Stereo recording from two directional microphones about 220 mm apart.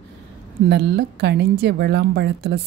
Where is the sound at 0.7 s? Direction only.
50° right (ahead or behind).